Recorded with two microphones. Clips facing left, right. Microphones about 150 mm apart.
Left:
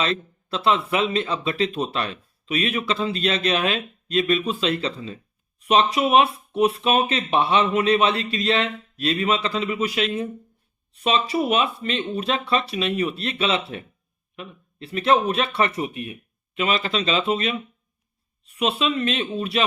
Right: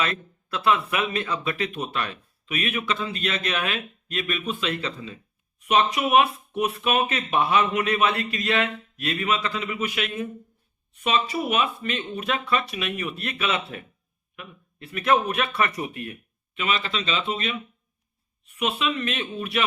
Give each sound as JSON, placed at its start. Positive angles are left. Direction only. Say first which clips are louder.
{"t": 0.0, "sound": "speech", "louder": "left 3 dB", "side_deg": 25}
{"t": 16.6, "sound": "speech", "louder": "left 4 dB", "side_deg": 35}